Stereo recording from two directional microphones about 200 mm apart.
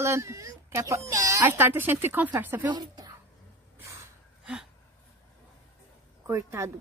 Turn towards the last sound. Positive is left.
turn(degrees=-15)  # may be behind; listen again after turning